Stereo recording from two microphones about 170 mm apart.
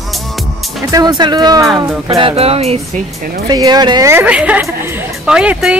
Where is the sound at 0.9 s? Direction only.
20° right (ahead or behind); by 3.0 s 35° right (ahead or behind).